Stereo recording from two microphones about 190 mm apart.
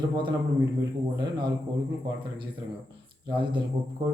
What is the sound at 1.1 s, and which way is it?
Speech, 20° right (ahead or behind).